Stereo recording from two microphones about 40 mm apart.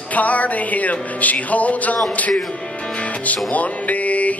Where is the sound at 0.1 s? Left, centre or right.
Left.